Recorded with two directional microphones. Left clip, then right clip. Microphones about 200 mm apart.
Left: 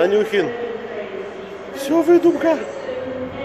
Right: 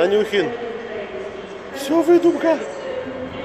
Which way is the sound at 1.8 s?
Centre (ahead or behind).